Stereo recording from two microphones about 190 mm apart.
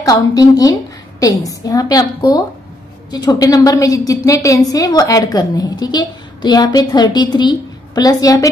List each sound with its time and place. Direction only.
0.0 s a woman's voice: 20° left (ahead or behind)